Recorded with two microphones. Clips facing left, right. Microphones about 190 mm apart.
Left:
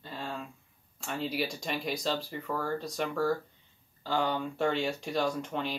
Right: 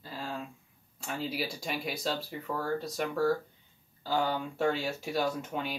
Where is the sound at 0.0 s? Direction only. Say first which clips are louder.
Even; 5° right (ahead or behind).